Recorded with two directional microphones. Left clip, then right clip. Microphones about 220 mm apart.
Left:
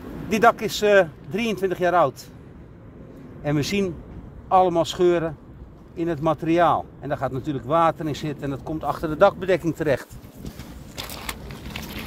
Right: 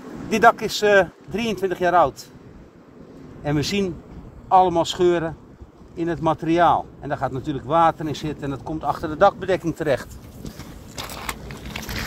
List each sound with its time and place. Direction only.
0.3 s speech: 25° left (ahead or behind)
3.4 s speech: 20° left (ahead or behind)
11.0 s a sound: centre (ahead or behind)